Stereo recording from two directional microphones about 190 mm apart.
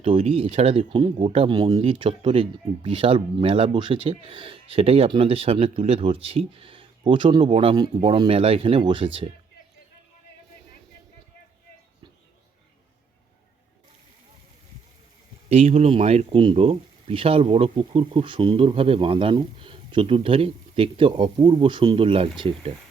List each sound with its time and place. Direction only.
0.0 s speech: 30° right (ahead or behind)
15.4 s speech: 35° right (ahead or behind)